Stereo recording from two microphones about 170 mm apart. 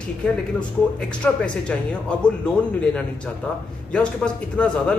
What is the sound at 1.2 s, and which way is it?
Speech, 10° left (ahead or behind).